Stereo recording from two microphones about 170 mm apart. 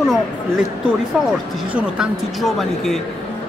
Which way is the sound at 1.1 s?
Centre (ahead or behind).